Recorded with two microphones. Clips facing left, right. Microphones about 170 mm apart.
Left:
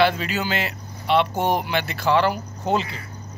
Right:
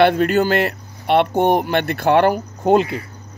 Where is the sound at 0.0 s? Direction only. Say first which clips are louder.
Right 7 dB; 55° right (ahead or behind).